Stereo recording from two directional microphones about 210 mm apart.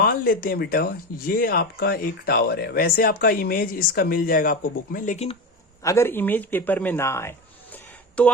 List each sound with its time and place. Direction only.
0.0 s speech: 45° left (ahead or behind)
5.8 s a man's voice: 15° left (ahead or behind)